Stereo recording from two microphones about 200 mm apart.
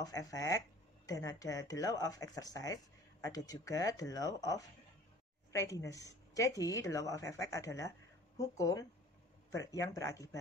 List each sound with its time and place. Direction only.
0.0 s speech: 15° left (ahead or behind)